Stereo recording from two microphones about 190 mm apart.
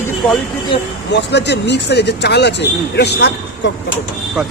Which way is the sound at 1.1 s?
65° left (ahead or behind).